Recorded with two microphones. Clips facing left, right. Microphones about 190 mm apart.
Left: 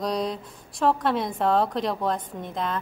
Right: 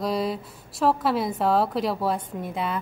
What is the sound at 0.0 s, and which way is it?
A woman's voice, 5° right (ahead or behind).